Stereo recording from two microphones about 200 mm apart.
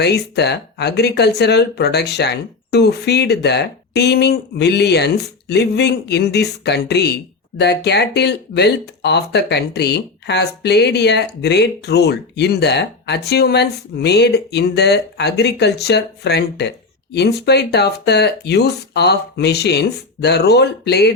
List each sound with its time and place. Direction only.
0.0 s speech: 55° left (ahead or behind)